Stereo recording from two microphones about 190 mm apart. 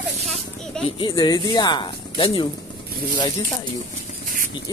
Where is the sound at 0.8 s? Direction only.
25° left (ahead or behind).